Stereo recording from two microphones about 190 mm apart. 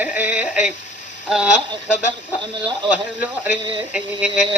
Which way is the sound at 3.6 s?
25° right (ahead or behind).